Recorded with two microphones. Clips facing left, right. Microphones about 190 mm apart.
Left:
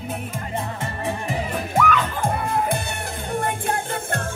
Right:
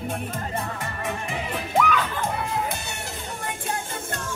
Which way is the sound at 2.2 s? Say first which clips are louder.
Left 4 dB; 55° left (ahead or behind).